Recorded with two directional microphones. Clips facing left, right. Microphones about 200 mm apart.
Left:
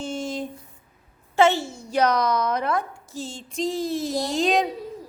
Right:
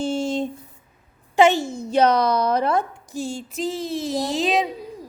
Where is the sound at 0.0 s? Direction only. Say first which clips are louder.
Right 6 dB; 30° right (ahead or behind).